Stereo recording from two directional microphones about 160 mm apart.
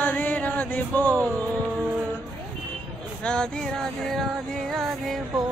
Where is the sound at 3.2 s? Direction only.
5° left (ahead or behind).